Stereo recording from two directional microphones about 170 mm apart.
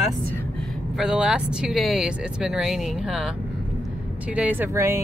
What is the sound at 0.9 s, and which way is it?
Speech, 5° right (ahead or behind).